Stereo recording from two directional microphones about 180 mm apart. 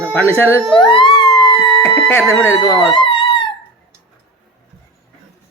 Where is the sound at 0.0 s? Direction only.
10° left (ahead or behind).